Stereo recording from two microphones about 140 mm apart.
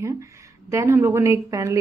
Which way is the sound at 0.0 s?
20° right (ahead or behind).